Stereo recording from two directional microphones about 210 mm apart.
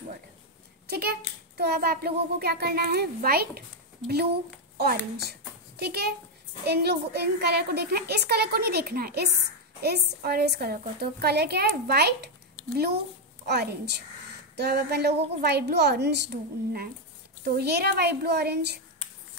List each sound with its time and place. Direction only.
0.8 s a woman's voice: 45° right (ahead or behind)
4.7 s a child's voice: 50° right (ahead or behind)
13.5 s a woman's voice: 50° right (ahead or behind)